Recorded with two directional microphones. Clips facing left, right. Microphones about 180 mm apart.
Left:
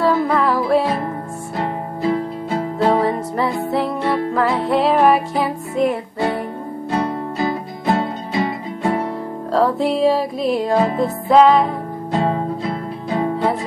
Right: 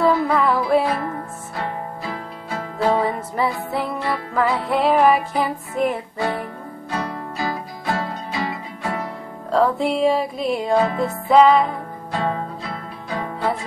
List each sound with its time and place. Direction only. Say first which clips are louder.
0.0 s music: left 1 dB; centre (ahead or behind)
1.6 s music: left 6 dB; 25° left (ahead or behind)
3.0 s music: left 3 dB; centre (ahead or behind)
6.9 s music: left 6 dB; 25° left (ahead or behind)
9.5 s music: left 1 dB; centre (ahead or behind)
12.1 s music: left 5 dB; 25° left (ahead or behind)